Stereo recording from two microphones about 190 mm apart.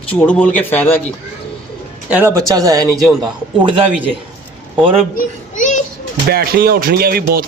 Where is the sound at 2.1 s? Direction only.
10° right (ahead or behind).